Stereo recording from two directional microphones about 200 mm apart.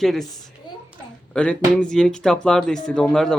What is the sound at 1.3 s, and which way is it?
Speech, 5° left (ahead or behind).